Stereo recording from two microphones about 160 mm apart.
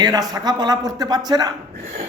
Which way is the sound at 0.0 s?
25° right (ahead or behind).